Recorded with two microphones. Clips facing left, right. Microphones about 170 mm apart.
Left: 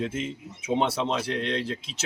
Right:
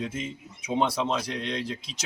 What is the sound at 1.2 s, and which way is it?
Speech, 10° right (ahead or behind).